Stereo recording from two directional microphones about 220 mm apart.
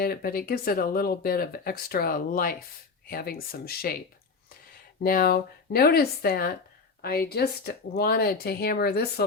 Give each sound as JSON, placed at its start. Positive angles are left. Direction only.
{"t": 0.0, "sound": "speech", "side_deg": 45}
{"t": 5.0, "sound": "speech", "side_deg": 40}